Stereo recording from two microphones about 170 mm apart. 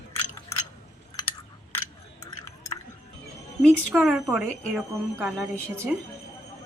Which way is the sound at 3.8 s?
Centre (ahead or behind).